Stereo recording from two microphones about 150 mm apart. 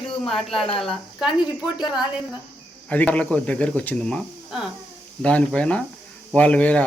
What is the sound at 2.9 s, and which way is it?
Speech, 10° left (ahead or behind).